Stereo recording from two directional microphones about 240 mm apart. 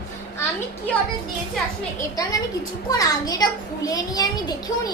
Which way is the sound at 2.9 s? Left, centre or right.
Centre.